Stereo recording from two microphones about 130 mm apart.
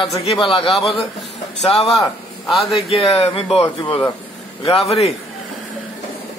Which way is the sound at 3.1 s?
45° left (ahead or behind).